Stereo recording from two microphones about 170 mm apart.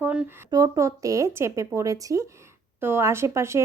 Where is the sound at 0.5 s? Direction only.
20° right (ahead or behind).